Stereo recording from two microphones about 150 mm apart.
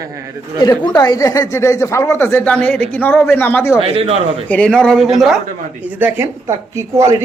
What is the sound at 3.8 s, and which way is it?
Speech, 40° right (ahead or behind).